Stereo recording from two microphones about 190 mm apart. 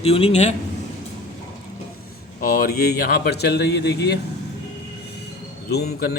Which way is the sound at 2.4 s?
50° left (ahead or behind).